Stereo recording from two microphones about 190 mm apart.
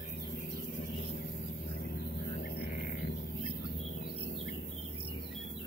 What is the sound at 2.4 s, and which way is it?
Music, 55° left (ahead or behind).